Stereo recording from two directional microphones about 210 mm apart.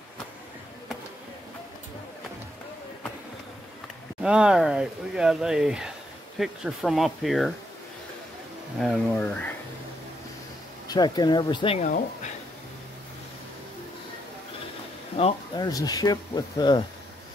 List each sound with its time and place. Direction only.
4.2 s speech: 5° right (ahead or behind)
8.7 s speech: 5° left (ahead or behind)
10.9 s speech: 20° left (ahead or behind)
15.1 s speech: 25° left (ahead or behind)